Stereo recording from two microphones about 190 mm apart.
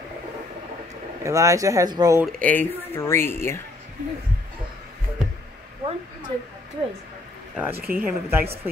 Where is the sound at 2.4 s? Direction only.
10° left (ahead or behind).